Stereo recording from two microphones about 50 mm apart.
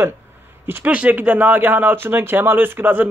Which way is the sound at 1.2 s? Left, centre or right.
Right.